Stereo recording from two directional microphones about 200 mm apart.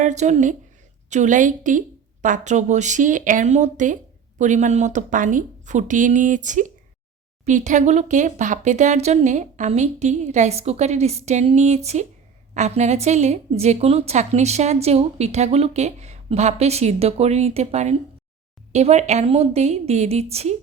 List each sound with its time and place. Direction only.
0.0 s a woman's voice: 35° right (ahead or behind)